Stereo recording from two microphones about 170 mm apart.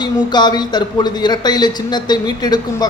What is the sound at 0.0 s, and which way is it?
Speech, 25° left (ahead or behind).